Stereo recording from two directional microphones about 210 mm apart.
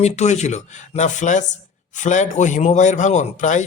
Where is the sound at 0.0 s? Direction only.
30° left (ahead or behind).